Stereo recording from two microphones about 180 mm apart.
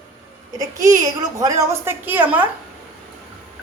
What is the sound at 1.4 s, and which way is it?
Speech, 20° right (ahead or behind).